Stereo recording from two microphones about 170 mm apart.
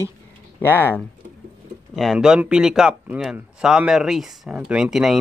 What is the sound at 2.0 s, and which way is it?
Speech, centre (ahead or behind).